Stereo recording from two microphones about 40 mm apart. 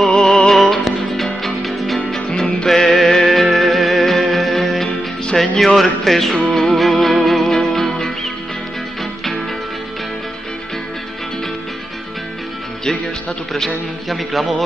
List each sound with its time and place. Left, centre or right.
0.1 s music: centre
2.2 s music: centre
2.7 s music: centre
4.8 s music: centre
5.8 s music: centre
14.0 s music: centre